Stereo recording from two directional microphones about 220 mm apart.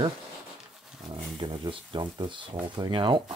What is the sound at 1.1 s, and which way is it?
Speech, 25° right (ahead or behind).